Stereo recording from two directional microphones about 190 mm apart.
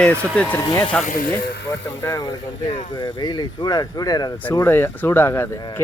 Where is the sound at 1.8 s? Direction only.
15° left (ahead or behind).